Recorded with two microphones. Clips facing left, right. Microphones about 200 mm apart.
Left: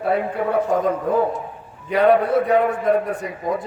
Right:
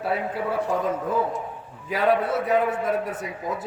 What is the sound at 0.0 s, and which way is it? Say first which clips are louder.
Speech: left 5 dB; 55° left (ahead or behind).